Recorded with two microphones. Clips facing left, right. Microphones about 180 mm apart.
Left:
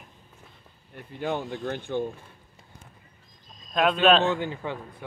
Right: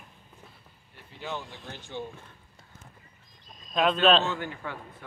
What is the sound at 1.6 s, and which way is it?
Speech, 55° left (ahead or behind).